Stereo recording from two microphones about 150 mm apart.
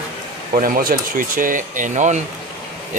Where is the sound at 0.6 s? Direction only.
70° right (ahead or behind); by 2.2 s 50° right (ahead or behind).